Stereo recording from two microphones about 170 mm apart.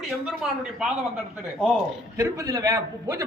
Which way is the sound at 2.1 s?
20° right (ahead or behind).